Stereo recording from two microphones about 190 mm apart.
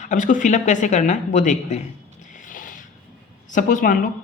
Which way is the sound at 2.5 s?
45° left (ahead or behind).